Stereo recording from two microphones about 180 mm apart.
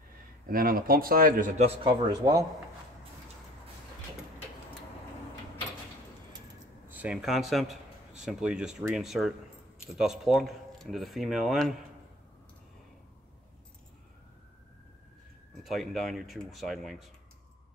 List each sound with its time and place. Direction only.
0.5 s speech: 55° right (ahead or behind)
1.6 s speech: 30° right (ahead or behind)
6.9 s speech: 5° right (ahead or behind)
15.6 s speech: centre (ahead or behind)